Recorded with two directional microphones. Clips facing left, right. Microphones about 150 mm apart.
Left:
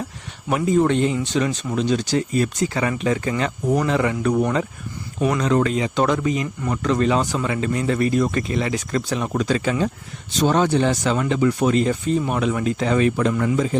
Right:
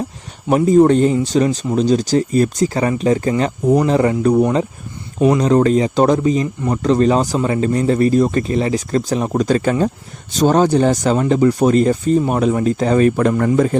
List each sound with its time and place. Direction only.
0.4 s speech: 35° right (ahead or behind); by 13.7 s 50° right (ahead or behind)